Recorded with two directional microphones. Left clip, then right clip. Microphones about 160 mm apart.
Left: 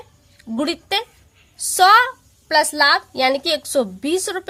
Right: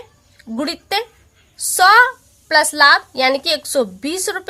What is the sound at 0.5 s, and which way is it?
A woman's voice, 25° left (ahead or behind).